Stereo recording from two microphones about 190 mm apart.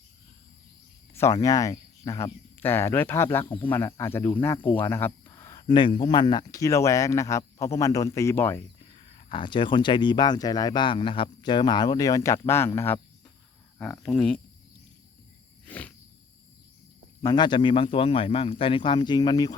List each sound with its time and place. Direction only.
1.1 s speech: 15° left (ahead or behind)
5.6 s speech: 25° left (ahead or behind)
8.9 s speech: 25° left (ahead or behind); by 14.4 s 5° left (ahead or behind)
15.6 s insect: 5° left (ahead or behind)
17.2 s speech: 20° left (ahead or behind)